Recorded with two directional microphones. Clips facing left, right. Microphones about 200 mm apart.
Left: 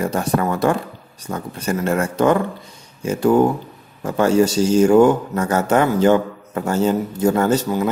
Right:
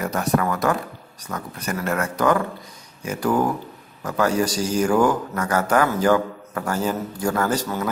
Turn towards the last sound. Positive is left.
turn(degrees=25)  # may be behind; listen again after turning